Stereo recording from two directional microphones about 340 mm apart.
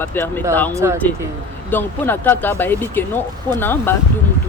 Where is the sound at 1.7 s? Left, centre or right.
Centre.